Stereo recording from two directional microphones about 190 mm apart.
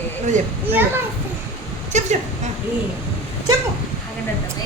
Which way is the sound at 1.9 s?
35° right (ahead or behind).